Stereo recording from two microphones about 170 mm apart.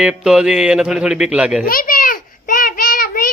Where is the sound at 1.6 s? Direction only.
55° left (ahead or behind).